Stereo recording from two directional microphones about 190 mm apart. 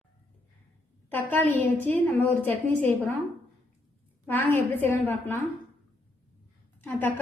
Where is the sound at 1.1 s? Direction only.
10° left (ahead or behind).